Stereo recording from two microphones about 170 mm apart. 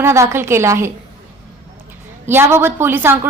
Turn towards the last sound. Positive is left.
turn(degrees=-15)  # may be behind; listen again after turning